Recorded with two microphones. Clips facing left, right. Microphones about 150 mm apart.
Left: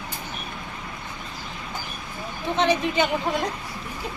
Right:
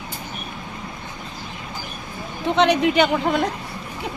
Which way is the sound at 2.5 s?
70° right (ahead or behind).